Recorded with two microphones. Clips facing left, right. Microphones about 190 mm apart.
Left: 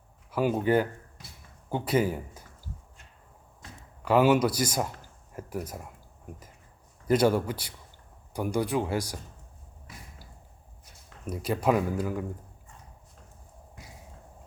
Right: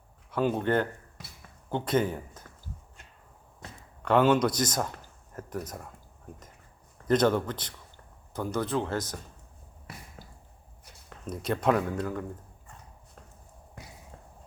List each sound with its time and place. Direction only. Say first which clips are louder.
0.3 s speech: left 2 dB; 5° left (ahead or behind)
4.0 s speech: left 1 dB; 5° left (ahead or behind)
7.1 s speech: left 1 dB; 10° left (ahead or behind)
9.9 s a sound: right 3 dB; 65° right (ahead or behind)
11.3 s speech: even; 5° left (ahead or behind)